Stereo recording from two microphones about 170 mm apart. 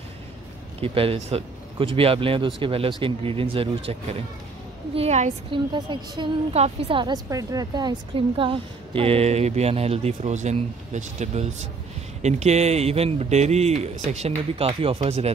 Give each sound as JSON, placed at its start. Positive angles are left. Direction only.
{"t": 0.7, "sound": "a woman's voice", "side_deg": -35}
{"t": 5.5, "sound": "a woman's voice", "side_deg": -25}